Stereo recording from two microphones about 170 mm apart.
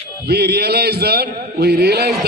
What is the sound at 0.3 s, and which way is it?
A man's voice, 70° right (ahead or behind).